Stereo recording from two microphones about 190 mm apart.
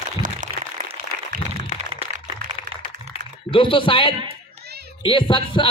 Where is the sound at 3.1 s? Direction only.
25° left (ahead or behind).